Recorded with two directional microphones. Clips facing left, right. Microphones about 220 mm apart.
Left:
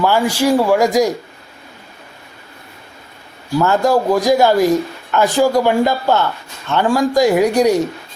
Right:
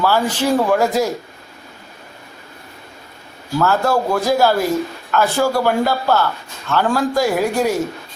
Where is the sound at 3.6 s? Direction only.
15° left (ahead or behind).